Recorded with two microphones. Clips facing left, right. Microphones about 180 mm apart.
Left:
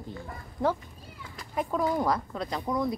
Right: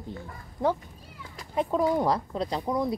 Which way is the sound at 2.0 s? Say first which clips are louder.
Right 2 dB; 30° right (ahead or behind).